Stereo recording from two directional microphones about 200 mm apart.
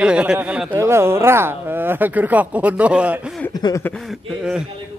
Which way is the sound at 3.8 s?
Centre (ahead or behind).